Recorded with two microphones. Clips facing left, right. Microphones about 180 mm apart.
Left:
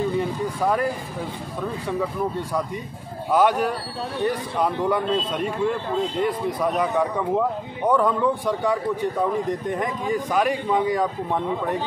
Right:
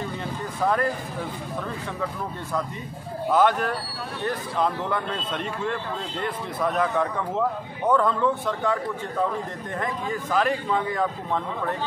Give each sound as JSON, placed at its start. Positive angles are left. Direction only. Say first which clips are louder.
{"t": 0.2, "sound": "vehicle", "louder": "left 3 dB", "side_deg": 10}
{"t": 3.3, "sound": "speech", "louder": "left 2 dB", "side_deg": 10}